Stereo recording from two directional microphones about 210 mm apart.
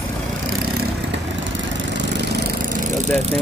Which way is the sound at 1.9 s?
50° right (ahead or behind).